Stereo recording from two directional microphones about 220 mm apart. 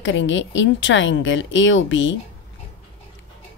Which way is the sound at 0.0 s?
60° left (ahead or behind).